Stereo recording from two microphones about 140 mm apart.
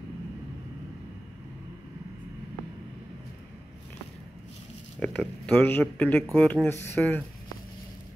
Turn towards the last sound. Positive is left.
turn(degrees=0)  # may be behind; listen again after turning